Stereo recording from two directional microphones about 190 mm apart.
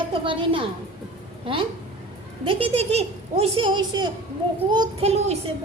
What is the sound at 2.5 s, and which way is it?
A woman's voice, 30° right (ahead or behind).